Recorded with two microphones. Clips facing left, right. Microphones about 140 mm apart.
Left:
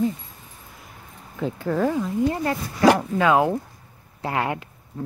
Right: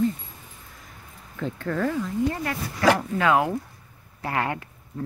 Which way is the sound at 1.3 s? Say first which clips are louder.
Left 4 dB; 10° left (ahead or behind).